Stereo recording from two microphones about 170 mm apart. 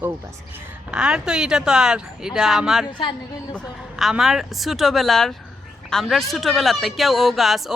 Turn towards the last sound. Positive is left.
turn(degrees=0)  # may be behind; listen again after turning